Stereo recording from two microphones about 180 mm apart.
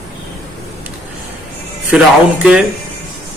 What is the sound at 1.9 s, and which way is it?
Speech, 5° right (ahead or behind).